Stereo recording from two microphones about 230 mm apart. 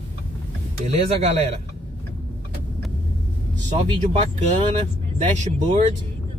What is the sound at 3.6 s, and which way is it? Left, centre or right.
Speech, right.